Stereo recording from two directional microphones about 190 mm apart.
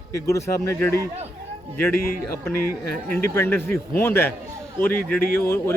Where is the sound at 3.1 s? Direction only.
10° left (ahead or behind).